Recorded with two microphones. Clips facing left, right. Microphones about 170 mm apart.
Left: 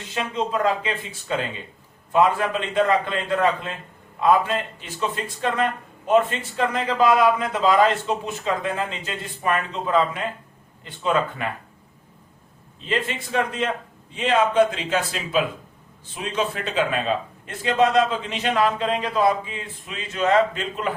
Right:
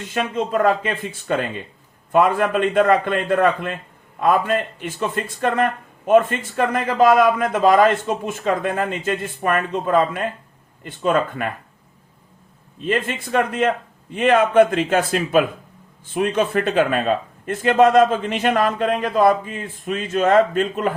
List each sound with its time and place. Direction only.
0.1 s a man's voice: 50° right (ahead or behind)
12.8 s a man's voice: 50° right (ahead or behind)